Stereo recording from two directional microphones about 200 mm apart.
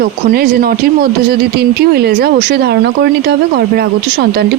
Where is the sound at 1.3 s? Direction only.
55° right (ahead or behind).